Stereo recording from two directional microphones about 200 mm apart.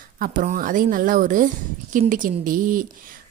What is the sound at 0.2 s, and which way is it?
Speech, 40° right (ahead or behind).